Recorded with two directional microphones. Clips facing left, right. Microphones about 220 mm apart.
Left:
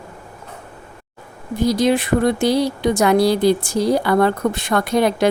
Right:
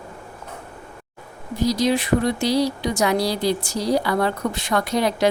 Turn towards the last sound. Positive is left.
turn(degrees=55)  # may be behind; listen again after turning